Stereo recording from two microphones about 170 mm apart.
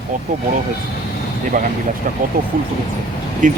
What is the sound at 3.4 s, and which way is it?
Speech, 50° right (ahead or behind).